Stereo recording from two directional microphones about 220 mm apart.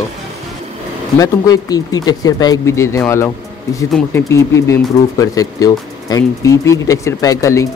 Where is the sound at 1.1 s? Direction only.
15° left (ahead or behind).